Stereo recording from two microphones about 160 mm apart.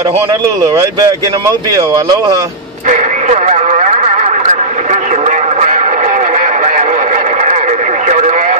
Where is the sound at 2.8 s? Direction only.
50° right (ahead or behind).